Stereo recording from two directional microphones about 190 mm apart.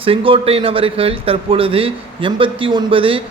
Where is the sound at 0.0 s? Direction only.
30° right (ahead or behind).